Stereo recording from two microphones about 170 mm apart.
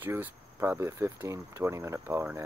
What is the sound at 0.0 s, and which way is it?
Speech, 15° right (ahead or behind).